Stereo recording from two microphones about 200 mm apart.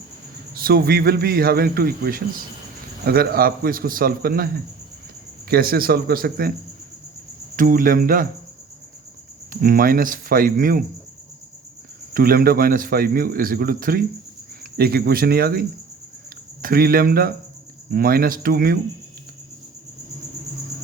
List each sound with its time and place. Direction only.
0.5 s a man's voice: 50° right (ahead or behind)
7.5 s a man's voice: 45° right (ahead or behind)
9.5 s a man's voice: 45° right (ahead or behind)
12.1 s a man's voice: 45° right (ahead or behind)